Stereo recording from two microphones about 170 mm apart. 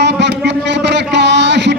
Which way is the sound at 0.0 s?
90° right.